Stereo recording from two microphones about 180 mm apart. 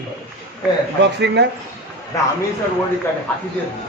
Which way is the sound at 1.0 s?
70° right (ahead or behind).